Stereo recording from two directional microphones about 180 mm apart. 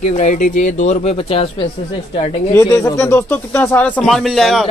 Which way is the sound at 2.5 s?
20° left (ahead or behind).